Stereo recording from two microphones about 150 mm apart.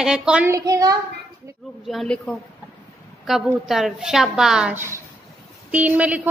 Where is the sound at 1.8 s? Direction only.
Centre (ahead or behind).